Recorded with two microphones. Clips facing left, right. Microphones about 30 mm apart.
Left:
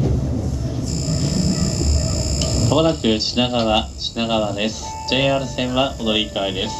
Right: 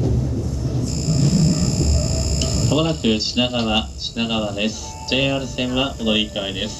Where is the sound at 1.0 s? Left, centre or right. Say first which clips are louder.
Right 4 dB; centre.